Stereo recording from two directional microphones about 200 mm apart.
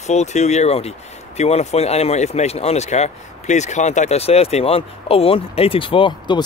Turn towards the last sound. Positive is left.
turn(degrees=25)  # may be behind; listen again after turning